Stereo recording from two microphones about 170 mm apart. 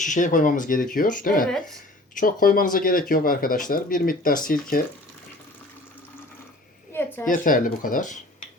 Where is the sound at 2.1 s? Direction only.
55° left (ahead or behind).